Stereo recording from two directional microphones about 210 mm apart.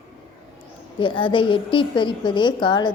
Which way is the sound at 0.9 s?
25° left (ahead or behind).